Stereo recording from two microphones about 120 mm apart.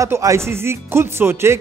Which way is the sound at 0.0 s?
25° right (ahead or behind).